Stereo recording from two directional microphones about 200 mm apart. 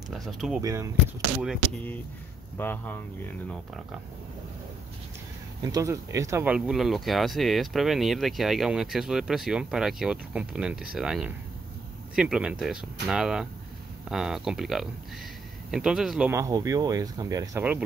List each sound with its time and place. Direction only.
0.1 s speech: centre (ahead or behind)
0.6 s speech: 15° right (ahead or behind)
2.5 s speech: 10° left (ahead or behind)
5.6 s speech: 15° right (ahead or behind)